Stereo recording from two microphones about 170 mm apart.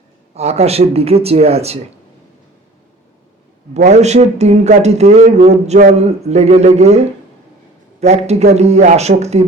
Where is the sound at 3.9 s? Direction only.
40° right (ahead or behind).